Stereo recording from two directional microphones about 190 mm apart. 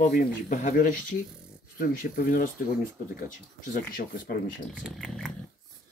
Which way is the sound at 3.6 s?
50° left (ahead or behind).